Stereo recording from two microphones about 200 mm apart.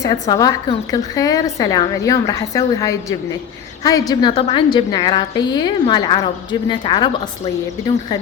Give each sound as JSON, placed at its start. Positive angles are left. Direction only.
{"t": 0.0, "sound": "a woman's voice", "side_deg": 20}